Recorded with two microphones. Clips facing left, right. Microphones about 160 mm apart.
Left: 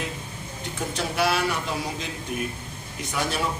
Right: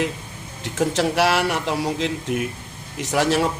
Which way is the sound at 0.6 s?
90° right.